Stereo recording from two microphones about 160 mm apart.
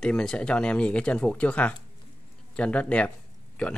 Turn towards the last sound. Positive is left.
turn(degrees=10)  # may be behind; listen again after turning